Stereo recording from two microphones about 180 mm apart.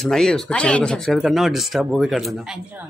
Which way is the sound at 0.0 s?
5° left (ahead or behind).